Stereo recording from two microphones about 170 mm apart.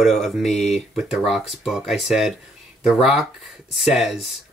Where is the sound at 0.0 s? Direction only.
Centre (ahead or behind).